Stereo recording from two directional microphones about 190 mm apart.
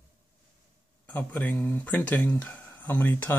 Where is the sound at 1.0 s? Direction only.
10° left (ahead or behind).